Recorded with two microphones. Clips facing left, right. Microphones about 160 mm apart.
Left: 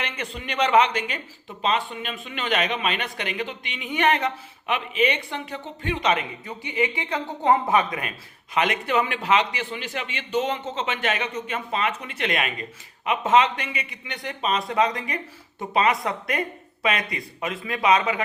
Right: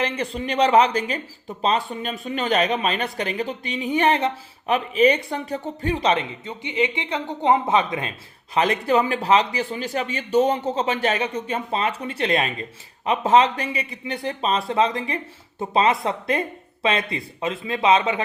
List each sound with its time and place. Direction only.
0.0 s a man's voice: 35° right (ahead or behind)